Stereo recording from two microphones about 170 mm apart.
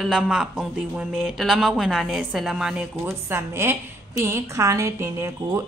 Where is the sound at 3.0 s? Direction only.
15° right (ahead or behind).